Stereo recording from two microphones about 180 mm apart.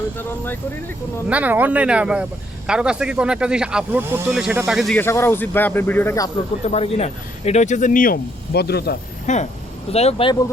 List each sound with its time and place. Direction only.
1.3 s speech: 10° right (ahead or behind)
4.9 s speech: 15° left (ahead or behind)
6.7 s speech: 35° left (ahead or behind); by 9.0 s 60° left (ahead or behind)
9.2 s speech: 40° left (ahead or behind)